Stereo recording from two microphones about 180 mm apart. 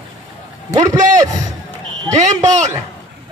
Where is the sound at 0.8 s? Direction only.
20° right (ahead or behind).